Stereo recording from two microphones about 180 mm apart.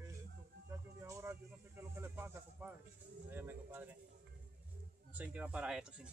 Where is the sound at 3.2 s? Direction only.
10° right (ahead or behind).